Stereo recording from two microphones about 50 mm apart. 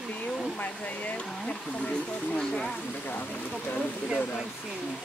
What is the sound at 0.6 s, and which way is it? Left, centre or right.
Speech, left.